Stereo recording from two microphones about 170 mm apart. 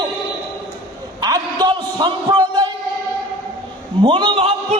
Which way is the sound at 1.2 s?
25° right (ahead or behind).